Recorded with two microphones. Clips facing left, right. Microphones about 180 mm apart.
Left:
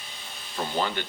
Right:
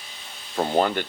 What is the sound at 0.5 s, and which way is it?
Speech, 50° right (ahead or behind).